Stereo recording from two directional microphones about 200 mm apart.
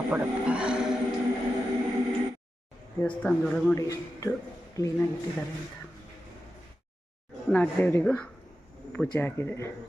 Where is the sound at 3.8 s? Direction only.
15° left (ahead or behind).